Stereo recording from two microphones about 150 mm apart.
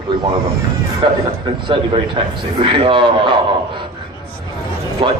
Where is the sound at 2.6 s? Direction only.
35° right (ahead or behind).